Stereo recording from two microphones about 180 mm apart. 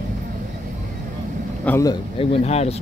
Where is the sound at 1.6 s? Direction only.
15° left (ahead or behind).